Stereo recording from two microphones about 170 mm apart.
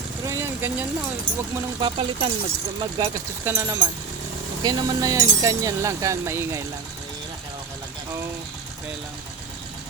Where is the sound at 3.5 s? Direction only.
15° right (ahead or behind).